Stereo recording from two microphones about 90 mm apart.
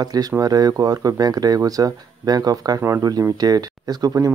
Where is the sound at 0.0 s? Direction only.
45° right (ahead or behind).